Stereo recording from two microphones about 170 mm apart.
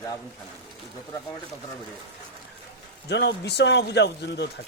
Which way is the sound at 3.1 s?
85° left.